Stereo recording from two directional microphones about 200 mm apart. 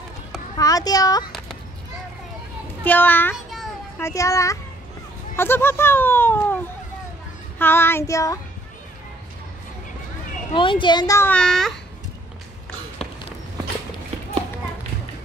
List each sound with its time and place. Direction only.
0.6 s speech: 20° left (ahead or behind)
2.8 s speech: 10° left (ahead or behind)
10.5 s speech: 25° left (ahead or behind); by 11.8 s centre (ahead or behind)